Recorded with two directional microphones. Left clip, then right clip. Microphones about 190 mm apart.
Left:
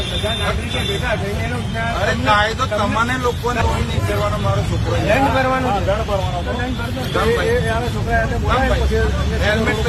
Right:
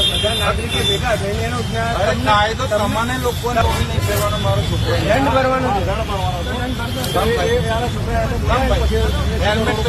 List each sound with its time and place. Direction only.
2.0 s speech: centre (ahead or behind)